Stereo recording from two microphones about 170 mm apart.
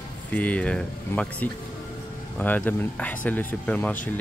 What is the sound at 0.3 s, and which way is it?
Speech, 10° left (ahead or behind).